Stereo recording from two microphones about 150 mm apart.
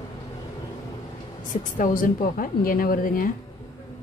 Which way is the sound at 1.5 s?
60° left (ahead or behind).